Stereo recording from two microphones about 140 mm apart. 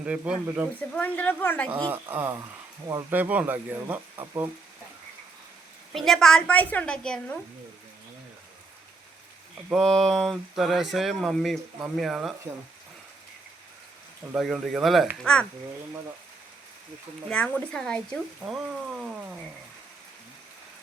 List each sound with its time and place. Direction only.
0.0 s speech: 10° right (ahead or behind)
0.8 s a woman's voice: 10° left (ahead or behind)
1.8 s speech: 15° right (ahead or behind)
5.9 s speech: centre (ahead or behind)
9.7 s speech: centre (ahead or behind)
14.3 s speech: centre (ahead or behind)
17.2 s speech: 10° left (ahead or behind)